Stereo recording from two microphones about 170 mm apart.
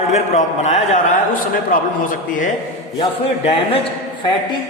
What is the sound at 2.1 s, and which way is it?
Speech, 50° left (ahead or behind).